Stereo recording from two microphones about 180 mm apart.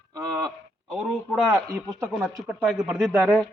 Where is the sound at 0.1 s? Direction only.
15° right (ahead or behind).